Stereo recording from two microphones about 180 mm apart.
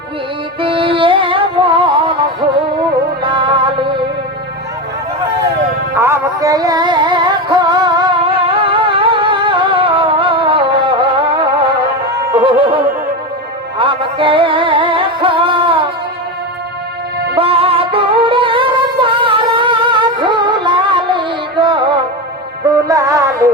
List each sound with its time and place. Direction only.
0.6 s music: 30° right (ahead or behind)
5.9 s music: 15° right (ahead or behind); by 15.8 s 30° right (ahead or behind)
17.3 s music: 30° right (ahead or behind)